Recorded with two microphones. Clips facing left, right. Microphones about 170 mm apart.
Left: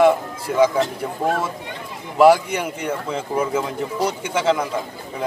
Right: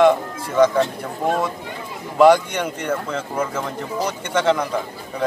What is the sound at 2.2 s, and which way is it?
Speech, 5° left (ahead or behind).